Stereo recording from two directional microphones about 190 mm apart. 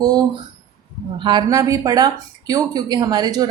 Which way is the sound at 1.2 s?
25° right (ahead or behind).